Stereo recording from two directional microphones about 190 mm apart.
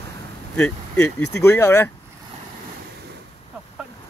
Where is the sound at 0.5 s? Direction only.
5° left (ahead or behind).